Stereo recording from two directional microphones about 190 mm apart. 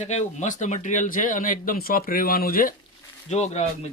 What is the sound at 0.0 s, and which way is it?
Speech, 35° left (ahead or behind).